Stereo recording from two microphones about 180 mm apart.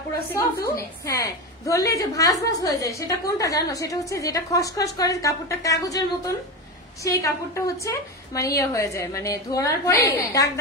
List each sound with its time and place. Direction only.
0.7 s a woman's voice: 15° left (ahead or behind)